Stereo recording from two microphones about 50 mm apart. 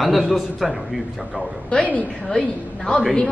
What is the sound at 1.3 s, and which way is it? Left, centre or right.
Speech, left.